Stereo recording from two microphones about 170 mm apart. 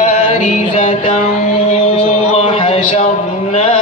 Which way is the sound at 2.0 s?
35° left (ahead or behind).